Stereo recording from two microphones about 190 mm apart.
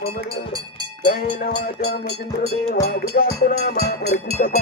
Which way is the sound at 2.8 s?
50° left (ahead or behind).